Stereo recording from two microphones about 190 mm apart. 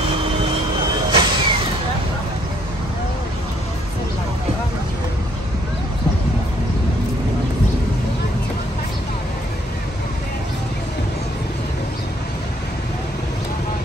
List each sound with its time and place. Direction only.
1.1 s vehicle: 25° right (ahead or behind)